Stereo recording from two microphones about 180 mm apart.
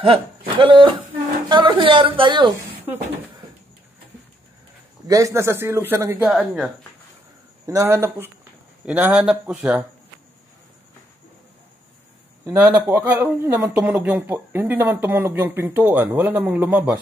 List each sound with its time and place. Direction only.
0.0 s a woman's voice: 30° right (ahead or behind)
5.0 s a man's voice: 20° right (ahead or behind)
7.6 s a man's voice: 15° right (ahead or behind)
12.4 s a man's voice: 10° right (ahead or behind)